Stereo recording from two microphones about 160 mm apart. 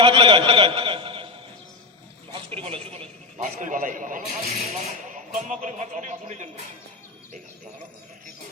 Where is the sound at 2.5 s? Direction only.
35° right (ahead or behind).